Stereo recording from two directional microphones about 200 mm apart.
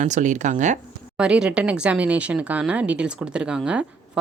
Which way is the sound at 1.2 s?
5° right (ahead or behind).